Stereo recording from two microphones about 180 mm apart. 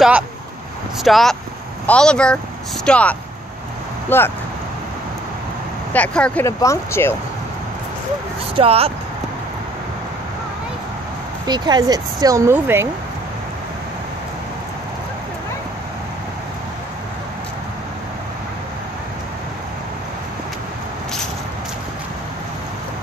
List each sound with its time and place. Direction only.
1.0 s speech: centre (ahead or behind)
5.9 s speech: 5° left (ahead or behind)
8.5 s speech: 35° right (ahead or behind)
11.4 s speech: 25° right (ahead or behind)